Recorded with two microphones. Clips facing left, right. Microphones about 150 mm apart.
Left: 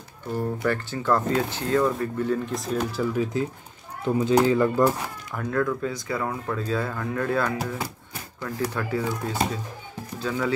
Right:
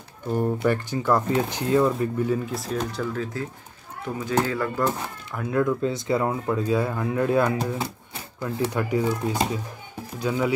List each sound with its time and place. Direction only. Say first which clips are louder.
0.4 s speech: right 3 dB; 15° right (ahead or behind); by 3.3 s 10° left (ahead or behind)
4.0 s speech: left 5 dB; 25° left (ahead or behind)
5.5 s speech: right 3 dB; 20° right (ahead or behind)